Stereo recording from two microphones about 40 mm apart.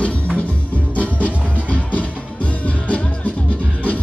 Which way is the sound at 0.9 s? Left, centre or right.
Left.